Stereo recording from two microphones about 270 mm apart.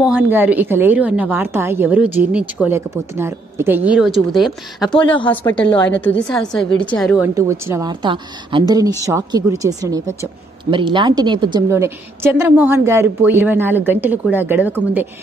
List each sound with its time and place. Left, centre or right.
0.0 s a woman's voice: centre
4.8 s a woman's voice: centre
5.3 s a woman's voice: centre
7.3 s a woman's voice: centre